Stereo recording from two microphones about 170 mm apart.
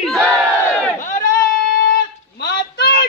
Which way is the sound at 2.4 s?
70° left (ahead or behind).